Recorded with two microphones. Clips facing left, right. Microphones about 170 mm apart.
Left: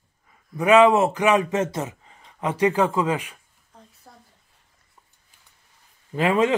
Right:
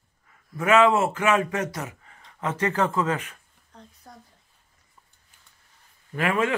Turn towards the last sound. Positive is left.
turn(degrees=20)  # may be behind; listen again after turning